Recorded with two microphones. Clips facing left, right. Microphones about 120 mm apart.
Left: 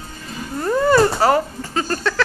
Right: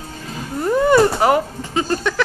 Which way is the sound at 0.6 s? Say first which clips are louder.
Right 1 dB; 15° right (ahead or behind).